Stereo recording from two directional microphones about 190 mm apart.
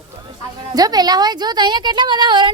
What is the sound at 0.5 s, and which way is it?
A woman's voice, 20° right (ahead or behind).